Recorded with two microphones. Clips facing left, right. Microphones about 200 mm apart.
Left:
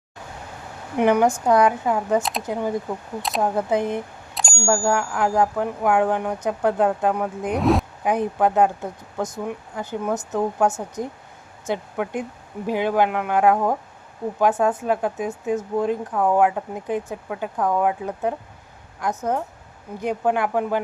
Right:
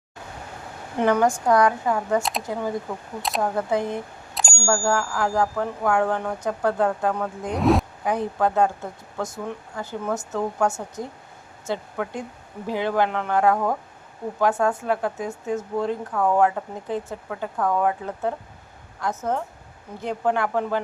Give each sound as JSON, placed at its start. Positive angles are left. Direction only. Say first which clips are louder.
{"t": 0.9, "sound": "speech", "louder": "left 2 dB", "side_deg": 15}
{"t": 3.2, "sound": "speech", "louder": "left 1 dB", "side_deg": 0}
{"t": 3.4, "sound": "speech", "louder": "left 3 dB", "side_deg": 20}
{"t": 7.5, "sound": "speech", "louder": "even", "side_deg": 0}
{"t": 8.0, "sound": "speech", "louder": "left 5 dB", "side_deg": 20}